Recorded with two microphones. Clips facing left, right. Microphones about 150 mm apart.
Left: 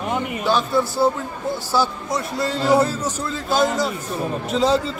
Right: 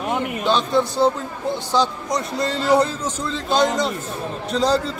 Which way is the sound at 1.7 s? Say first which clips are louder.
Right 1 dB; 5° left (ahead or behind).